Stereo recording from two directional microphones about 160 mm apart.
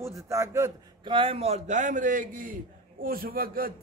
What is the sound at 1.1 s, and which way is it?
A man's voice, 35° right (ahead or behind).